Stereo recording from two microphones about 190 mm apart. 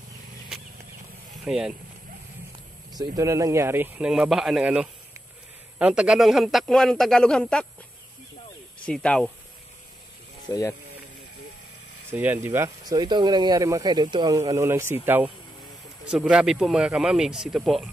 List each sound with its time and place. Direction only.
1.4 s speech: 5° right (ahead or behind)
3.2 s speech: 15° right (ahead or behind); by 7.6 s 5° left (ahead or behind)
8.8 s speech: 5° left (ahead or behind)
10.5 s speech: 15° left (ahead or behind)
12.1 s speech: 10° right (ahead or behind)